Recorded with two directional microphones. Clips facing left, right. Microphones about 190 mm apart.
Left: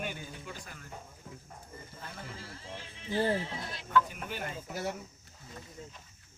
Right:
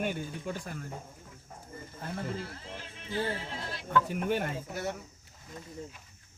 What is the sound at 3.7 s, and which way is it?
Speech, 55° right (ahead or behind).